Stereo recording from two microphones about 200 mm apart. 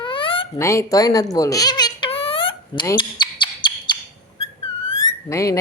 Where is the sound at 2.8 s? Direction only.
25° left (ahead or behind).